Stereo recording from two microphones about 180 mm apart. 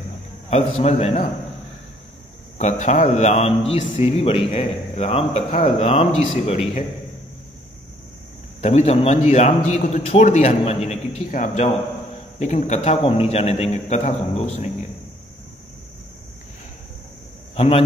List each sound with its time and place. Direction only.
0.5 s a man's voice: 35° left (ahead or behind)
2.6 s a man's voice: 40° left (ahead or behind)
8.5 s a man's voice: 35° left (ahead or behind)
17.6 s a man's voice: 35° left (ahead or behind)